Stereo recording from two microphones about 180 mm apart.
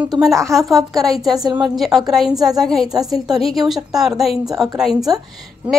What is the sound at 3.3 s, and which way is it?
Speech, centre (ahead or behind).